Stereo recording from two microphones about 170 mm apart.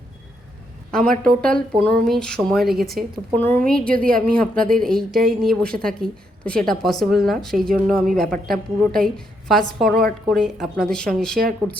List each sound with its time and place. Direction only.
1.0 s a woman's voice: 55° right (ahead or behind)
1.4 s a woman's voice: 5° left (ahead or behind)